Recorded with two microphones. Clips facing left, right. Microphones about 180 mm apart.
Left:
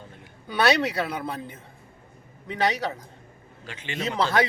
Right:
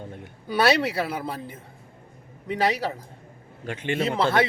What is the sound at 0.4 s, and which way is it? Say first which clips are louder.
Speech: right 1 dB; 5° right (ahead or behind).